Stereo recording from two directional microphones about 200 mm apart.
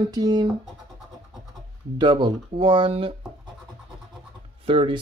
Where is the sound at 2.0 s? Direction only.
20° right (ahead or behind).